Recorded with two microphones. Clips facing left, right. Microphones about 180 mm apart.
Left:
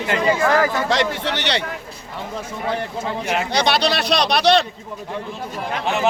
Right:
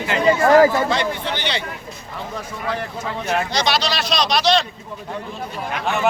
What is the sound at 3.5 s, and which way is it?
Speech, 60° left (ahead or behind).